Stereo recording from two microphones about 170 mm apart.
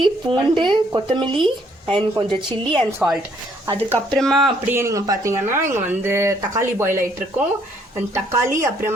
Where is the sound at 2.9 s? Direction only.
5° right (ahead or behind).